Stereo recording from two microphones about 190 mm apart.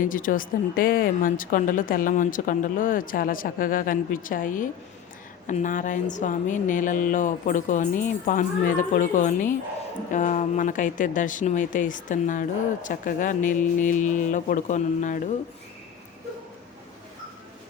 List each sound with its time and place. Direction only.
0.0 s speech: 45° left (ahead or behind)